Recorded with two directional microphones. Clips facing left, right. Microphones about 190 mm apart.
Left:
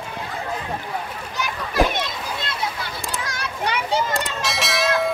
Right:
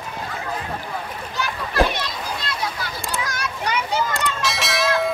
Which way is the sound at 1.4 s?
20° left (ahead or behind).